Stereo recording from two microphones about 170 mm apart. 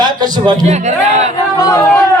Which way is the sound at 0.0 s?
25° right (ahead or behind).